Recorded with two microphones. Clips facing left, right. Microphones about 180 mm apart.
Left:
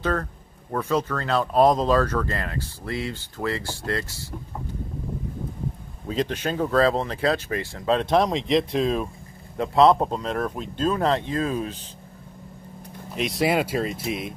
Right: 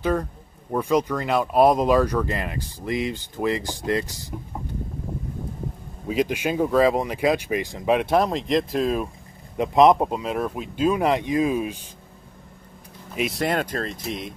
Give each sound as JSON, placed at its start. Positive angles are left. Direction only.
{"t": 0.0, "sound": "speech", "side_deg": -10}
{"t": 6.0, "sound": "speech", "side_deg": -10}
{"t": 9.6, "sound": "speech", "side_deg": -15}
{"t": 13.1, "sound": "speech", "side_deg": -5}